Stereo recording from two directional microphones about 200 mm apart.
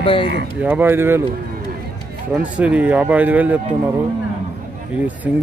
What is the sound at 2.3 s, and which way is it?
Speech, 5° right (ahead or behind).